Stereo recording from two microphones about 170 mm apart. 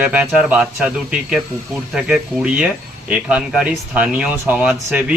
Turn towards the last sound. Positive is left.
turn(degrees=-10)  # may be behind; listen again after turning